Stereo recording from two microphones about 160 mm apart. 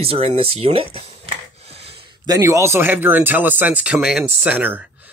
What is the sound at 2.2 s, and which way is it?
Speech, 20° right (ahead or behind).